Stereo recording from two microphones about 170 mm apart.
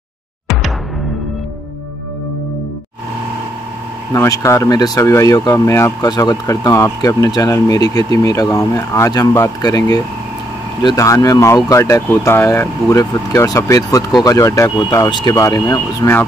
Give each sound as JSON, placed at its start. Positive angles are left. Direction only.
{"t": 4.1, "sound": "speech", "side_deg": 20}